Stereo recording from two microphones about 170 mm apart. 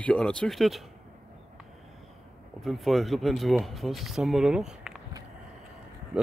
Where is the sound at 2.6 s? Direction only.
Centre (ahead or behind).